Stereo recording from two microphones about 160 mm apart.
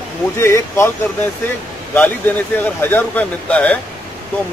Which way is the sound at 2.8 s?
10° left (ahead or behind).